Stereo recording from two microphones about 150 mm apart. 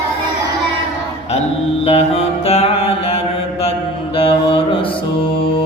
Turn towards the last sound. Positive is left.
turn(degrees=35)  # may be behind; listen again after turning